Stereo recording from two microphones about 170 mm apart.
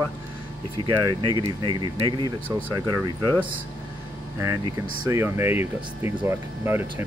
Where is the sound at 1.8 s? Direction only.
30° right (ahead or behind).